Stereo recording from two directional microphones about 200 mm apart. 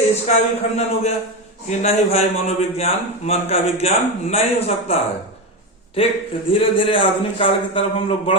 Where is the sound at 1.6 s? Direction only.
35° left (ahead or behind).